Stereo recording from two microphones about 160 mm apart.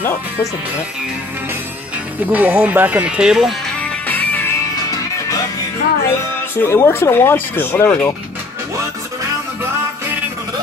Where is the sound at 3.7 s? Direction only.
10° left (ahead or behind).